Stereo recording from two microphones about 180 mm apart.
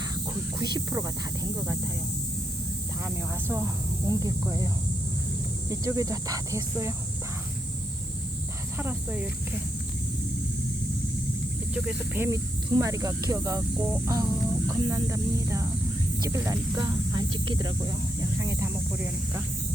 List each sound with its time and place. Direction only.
0.6 s speech: 20° right (ahead or behind)
3.0 s speech: 15° right (ahead or behind)
8.8 s speech: 10° right (ahead or behind)
11.7 s speech: 10° right (ahead or behind)